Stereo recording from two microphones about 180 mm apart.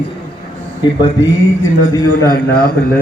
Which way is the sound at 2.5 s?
55° left (ahead or behind).